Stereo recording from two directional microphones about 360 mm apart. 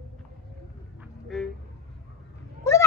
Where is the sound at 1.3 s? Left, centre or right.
Centre.